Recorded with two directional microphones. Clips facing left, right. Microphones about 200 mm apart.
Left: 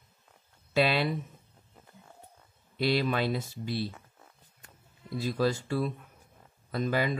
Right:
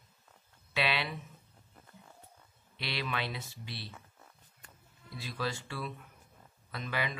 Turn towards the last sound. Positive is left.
turn(degrees=40)  # may be behind; listen again after turning